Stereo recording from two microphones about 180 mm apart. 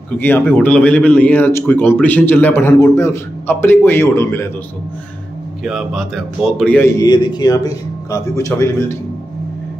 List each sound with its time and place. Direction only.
0.2 s speech: 10° left (ahead or behind)
5.6 s speech: centre (ahead or behind)
7.0 s speech: 25° left (ahead or behind)